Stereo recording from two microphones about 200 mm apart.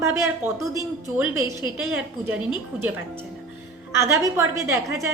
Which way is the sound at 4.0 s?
15° right (ahead or behind).